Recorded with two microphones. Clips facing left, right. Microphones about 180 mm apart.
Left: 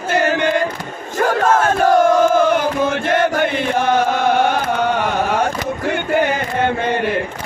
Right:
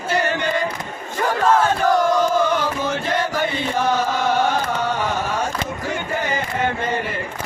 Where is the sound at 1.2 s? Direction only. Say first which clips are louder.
Left 2 dB; 50° left (ahead or behind).